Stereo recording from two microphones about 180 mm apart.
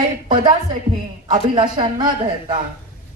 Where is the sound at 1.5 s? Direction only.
25° right (ahead or behind).